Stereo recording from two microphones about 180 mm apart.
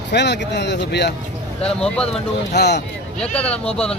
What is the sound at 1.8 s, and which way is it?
Speech, 5° left (ahead or behind).